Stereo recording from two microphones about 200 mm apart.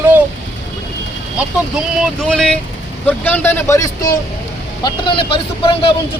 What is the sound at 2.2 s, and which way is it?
Speech, 5° left (ahead or behind).